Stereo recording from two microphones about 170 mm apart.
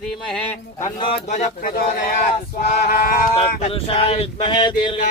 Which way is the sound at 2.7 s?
55° left (ahead or behind).